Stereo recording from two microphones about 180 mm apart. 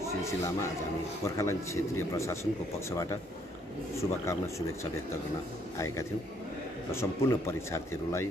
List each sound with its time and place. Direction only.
0.0 s a man's voice: 15° left (ahead or behind)
4.0 s speech: 15° left (ahead or behind)
6.9 s speech: 15° left (ahead or behind)